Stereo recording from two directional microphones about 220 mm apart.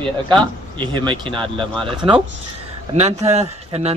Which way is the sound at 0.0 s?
20° right (ahead or behind).